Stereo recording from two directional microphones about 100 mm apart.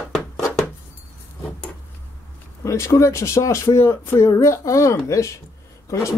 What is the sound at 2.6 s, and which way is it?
Speech, 30° left (ahead or behind).